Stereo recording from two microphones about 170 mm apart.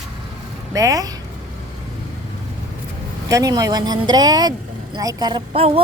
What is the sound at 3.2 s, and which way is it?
Speech, 20° right (ahead or behind).